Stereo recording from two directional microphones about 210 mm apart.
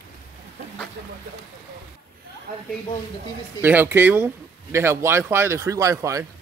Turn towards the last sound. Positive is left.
turn(degrees=-15)  # may be behind; listen again after turning